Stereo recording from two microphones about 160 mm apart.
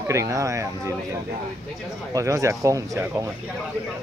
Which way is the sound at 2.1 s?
20° right (ahead or behind).